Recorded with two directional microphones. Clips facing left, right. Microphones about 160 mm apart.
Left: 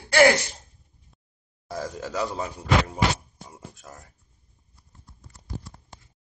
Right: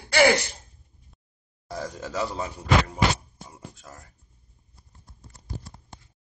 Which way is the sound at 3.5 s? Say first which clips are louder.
Left 1 dB; centre (ahead or behind).